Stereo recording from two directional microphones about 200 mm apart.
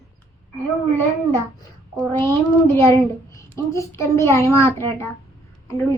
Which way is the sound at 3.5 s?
15° left (ahead or behind).